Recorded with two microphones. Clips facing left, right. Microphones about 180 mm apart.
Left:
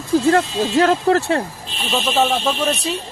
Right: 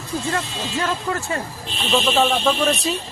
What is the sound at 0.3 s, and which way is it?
Speech, 70° left (ahead or behind).